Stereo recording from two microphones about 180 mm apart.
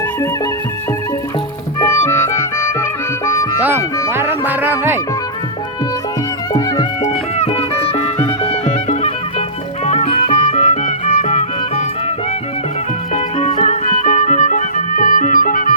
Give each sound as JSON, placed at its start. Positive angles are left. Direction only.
{"t": 1.8, "sound": "music", "side_deg": 15}
{"t": 4.1, "sound": "music", "side_deg": -15}
{"t": 7.0, "sound": "music", "side_deg": 40}
{"t": 13.1, "sound": "music", "side_deg": 40}